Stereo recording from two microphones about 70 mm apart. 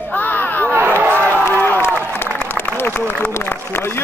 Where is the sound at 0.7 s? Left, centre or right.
Right.